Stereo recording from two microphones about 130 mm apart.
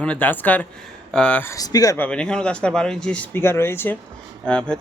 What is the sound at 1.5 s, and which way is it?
Speech, 30° left (ahead or behind).